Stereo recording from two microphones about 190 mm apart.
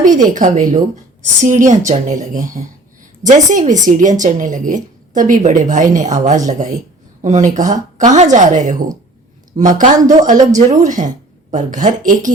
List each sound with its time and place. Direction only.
0.0 s a woman's voice: 45° right (ahead or behind)